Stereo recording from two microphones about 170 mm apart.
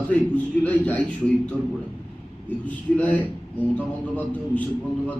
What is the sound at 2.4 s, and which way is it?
A man's voice, 10° left (ahead or behind).